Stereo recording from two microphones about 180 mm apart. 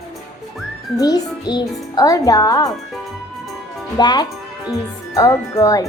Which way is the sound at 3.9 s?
25° left (ahead or behind).